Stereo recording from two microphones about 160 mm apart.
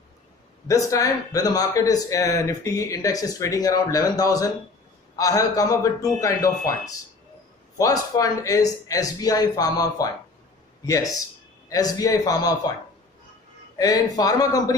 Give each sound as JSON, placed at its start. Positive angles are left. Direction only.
{"t": 0.7, "sound": "speech", "side_deg": 20}
{"t": 7.7, "sound": "speech", "side_deg": 20}
{"t": 13.7, "sound": "speech", "side_deg": 25}